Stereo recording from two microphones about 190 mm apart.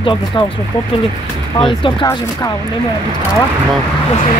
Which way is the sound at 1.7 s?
25° left (ahead or behind).